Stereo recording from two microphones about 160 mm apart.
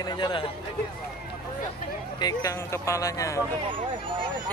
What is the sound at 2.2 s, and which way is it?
Speech, 25° left (ahead or behind).